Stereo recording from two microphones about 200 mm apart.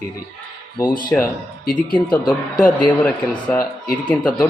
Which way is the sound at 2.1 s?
20° left (ahead or behind).